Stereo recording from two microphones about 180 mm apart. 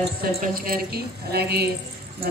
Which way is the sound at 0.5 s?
55° right (ahead or behind).